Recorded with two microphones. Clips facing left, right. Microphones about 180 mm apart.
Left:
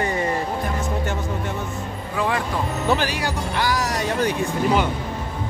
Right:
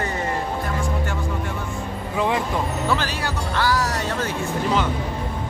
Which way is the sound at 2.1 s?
20° right (ahead or behind).